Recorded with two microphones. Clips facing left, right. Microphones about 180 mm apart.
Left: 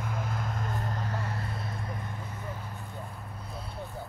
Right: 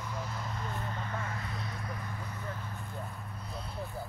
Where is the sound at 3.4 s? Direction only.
Centre (ahead or behind).